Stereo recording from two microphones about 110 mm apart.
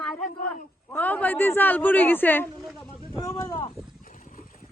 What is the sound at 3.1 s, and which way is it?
Speech, 30° left (ahead or behind).